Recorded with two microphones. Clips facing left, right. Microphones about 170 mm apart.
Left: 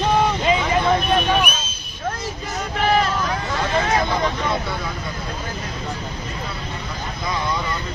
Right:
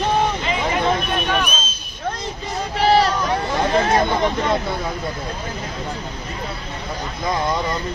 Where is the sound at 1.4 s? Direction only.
10° left (ahead or behind).